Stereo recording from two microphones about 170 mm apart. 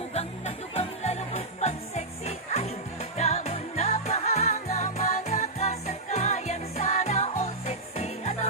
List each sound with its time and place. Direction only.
0.1 s music: 40° left (ahead or behind)